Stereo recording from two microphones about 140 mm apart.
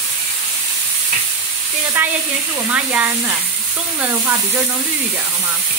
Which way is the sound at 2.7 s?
10° right (ahead or behind).